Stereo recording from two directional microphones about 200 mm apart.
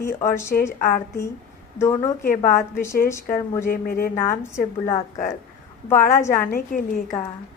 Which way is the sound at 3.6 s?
45° left (ahead or behind).